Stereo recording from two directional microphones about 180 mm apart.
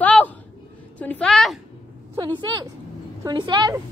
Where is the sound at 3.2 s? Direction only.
25° right (ahead or behind).